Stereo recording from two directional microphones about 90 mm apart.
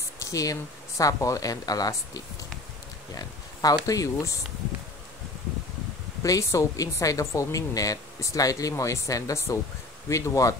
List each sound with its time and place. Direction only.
0.2 s speech: 40° left (ahead or behind)
3.8 s speech: 40° left (ahead or behind)
6.2 s speech: 35° left (ahead or behind)